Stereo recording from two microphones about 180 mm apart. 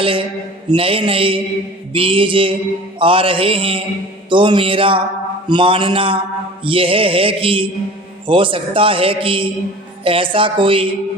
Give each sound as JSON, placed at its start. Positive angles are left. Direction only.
{"t": 0.0, "sound": "a man's voice", "side_deg": -30}